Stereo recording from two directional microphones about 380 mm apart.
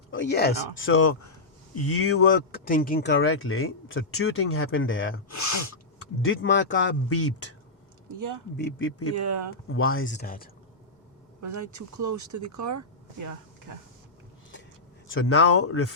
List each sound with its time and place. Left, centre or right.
0.1 s speech: left
5.3 s a sound: left
6.2 s speech: left
8.5 s speech: left
9.1 s speech: right
9.6 s speech: left
11.3 s speech: right
15.0 s speech: left